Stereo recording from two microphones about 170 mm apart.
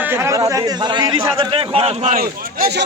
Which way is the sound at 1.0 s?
30° right (ahead or behind).